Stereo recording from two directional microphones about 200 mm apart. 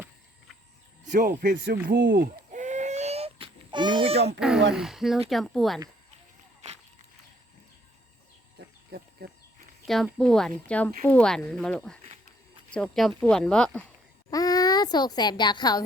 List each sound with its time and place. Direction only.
1.0 s speech: 45° right (ahead or behind)
2.5 s baby cry: 35° right (ahead or behind)
4.4 s speech: 5° right (ahead or behind)
8.5 s a sound: 55° right (ahead or behind)
9.8 s speech: centre (ahead or behind)
14.3 s a sound: 20° left (ahead or behind)